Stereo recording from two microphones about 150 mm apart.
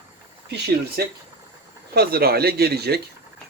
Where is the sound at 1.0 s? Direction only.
90° right.